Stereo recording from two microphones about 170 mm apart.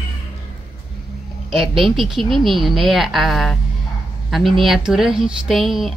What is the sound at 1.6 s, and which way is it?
Speech, centre (ahead or behind).